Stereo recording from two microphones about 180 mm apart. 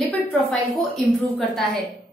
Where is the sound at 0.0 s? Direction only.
5° left (ahead or behind).